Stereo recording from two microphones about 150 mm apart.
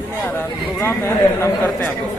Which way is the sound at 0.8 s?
15° left (ahead or behind).